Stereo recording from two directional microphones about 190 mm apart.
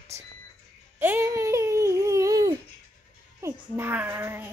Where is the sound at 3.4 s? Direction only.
10° right (ahead or behind).